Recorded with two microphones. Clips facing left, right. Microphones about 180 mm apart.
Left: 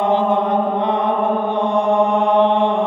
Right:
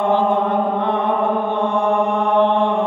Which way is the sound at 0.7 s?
15° left (ahead or behind).